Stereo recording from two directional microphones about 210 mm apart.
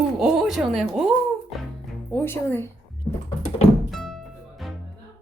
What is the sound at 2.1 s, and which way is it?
Speech, 10° left (ahead or behind).